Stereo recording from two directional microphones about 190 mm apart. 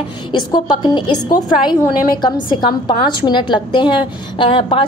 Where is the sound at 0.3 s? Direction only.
20° left (ahead or behind).